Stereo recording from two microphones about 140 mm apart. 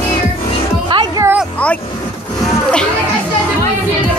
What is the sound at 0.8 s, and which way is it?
Music, 35° right (ahead or behind).